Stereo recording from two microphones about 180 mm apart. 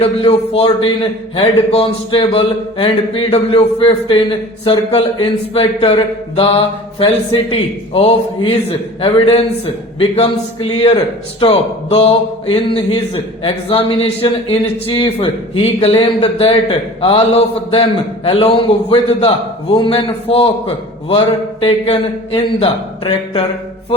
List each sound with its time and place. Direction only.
0.0 s speech: 30° left (ahead or behind)
7.9 s speech: 30° left (ahead or behind)